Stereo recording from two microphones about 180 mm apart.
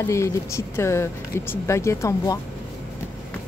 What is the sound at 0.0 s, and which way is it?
Speech, 15° left (ahead or behind).